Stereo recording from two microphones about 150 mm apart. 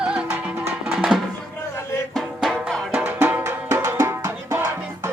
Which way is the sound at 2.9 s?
10° right (ahead or behind).